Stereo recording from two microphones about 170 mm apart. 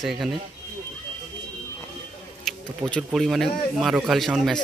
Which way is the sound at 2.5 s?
Centre (ahead or behind).